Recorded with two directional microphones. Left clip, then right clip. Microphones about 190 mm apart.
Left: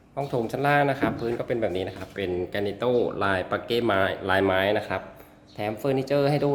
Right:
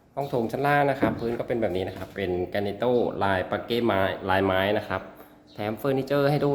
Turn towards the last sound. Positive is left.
turn(degrees=0)  # may be behind; listen again after turning